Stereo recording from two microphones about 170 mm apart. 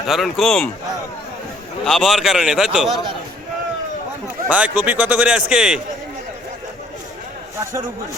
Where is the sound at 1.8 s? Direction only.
Centre (ahead or behind).